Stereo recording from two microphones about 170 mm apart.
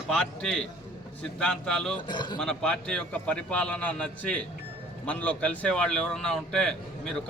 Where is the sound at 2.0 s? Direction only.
25° left (ahead or behind).